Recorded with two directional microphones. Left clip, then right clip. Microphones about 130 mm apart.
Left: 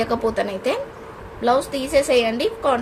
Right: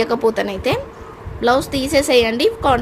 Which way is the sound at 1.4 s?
90° right.